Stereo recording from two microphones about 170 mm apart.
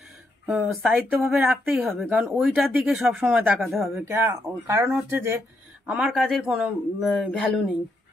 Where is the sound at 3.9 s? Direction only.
15° right (ahead or behind); by 7.7 s 5° left (ahead or behind).